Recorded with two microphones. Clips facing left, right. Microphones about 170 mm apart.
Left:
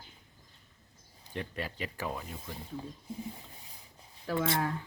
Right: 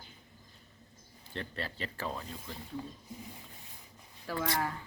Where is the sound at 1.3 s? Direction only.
10° left (ahead or behind).